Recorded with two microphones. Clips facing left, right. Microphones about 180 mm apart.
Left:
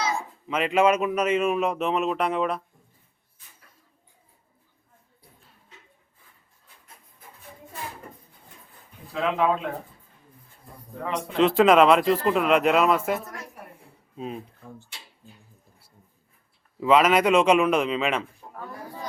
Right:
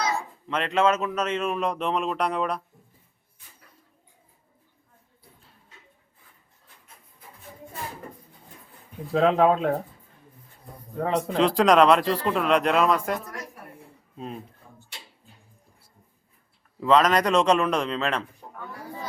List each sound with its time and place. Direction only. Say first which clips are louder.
0.0 s speech: even; 5° left (ahead or behind)
9.1 s speech: right 5 dB; 40° right (ahead or behind)
11.0 s speech: right 5 dB; 35° right (ahead or behind)
11.3 s speech: left 2 dB; centre (ahead or behind)
16.8 s speech: left 1 dB; 5° left (ahead or behind)